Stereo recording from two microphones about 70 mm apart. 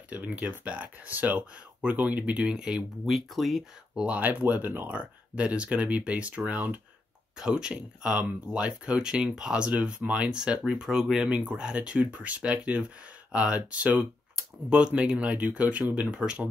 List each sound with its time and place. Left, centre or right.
0.5 s speech: right
3.1 s speech: centre
3.9 s speech: centre
7.3 s speech: centre